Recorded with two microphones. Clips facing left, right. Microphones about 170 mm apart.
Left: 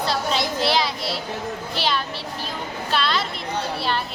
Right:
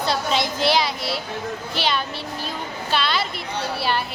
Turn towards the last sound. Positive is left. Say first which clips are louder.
# right 1 dB
turn(degrees=-5)  # may be behind; listen again after turning